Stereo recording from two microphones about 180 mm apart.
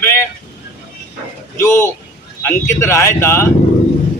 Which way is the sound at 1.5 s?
15° left (ahead or behind).